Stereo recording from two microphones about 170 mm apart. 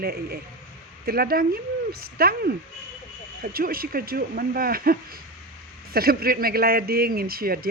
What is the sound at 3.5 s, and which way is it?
Speech, 60° right (ahead or behind).